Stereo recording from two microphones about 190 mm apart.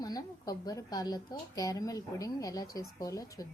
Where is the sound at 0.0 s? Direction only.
20° left (ahead or behind).